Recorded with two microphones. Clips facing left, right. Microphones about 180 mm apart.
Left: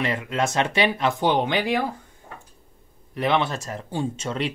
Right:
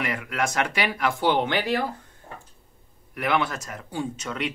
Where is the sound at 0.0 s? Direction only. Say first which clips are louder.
Left 3 dB; 25° left (ahead or behind).